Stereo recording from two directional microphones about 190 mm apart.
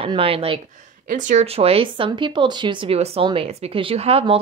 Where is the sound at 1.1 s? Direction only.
45° right (ahead or behind).